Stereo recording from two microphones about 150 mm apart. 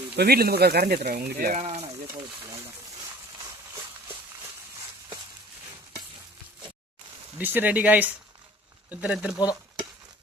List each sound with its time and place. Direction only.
0.2 s speech: 90° right
1.5 s speech: 45° right (ahead or behind)
7.3 s speech: 10° right (ahead or behind)